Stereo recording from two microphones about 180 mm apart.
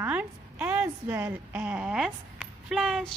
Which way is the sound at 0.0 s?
10° right (ahead or behind).